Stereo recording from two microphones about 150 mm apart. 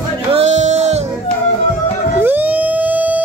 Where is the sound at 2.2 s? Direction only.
10° right (ahead or behind).